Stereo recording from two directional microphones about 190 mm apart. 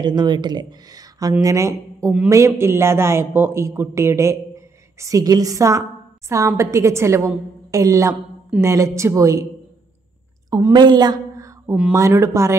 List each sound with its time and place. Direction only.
0.0 s a woman's voice: 25° right (ahead or behind)
10.5 s a sound: 20° right (ahead or behind)
11.9 s a woman's voice: 15° right (ahead or behind)